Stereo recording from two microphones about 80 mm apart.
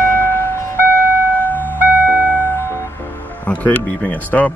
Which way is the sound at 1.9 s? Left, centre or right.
Right.